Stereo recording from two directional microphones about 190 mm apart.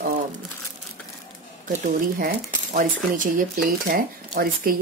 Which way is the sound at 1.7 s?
45° right (ahead or behind).